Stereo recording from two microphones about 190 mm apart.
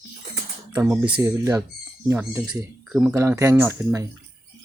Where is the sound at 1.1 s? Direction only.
20° right (ahead or behind).